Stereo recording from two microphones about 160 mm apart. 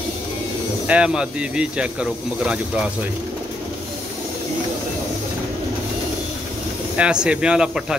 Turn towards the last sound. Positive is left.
turn(degrees=-5)  # may be behind; listen again after turning